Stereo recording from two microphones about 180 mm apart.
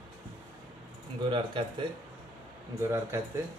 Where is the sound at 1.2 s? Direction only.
25° right (ahead or behind).